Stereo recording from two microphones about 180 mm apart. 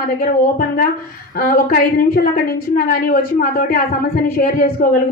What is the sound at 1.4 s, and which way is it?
A woman's voice, 55° left (ahead or behind).